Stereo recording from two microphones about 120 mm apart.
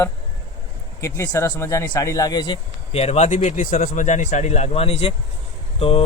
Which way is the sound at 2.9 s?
65° left (ahead or behind).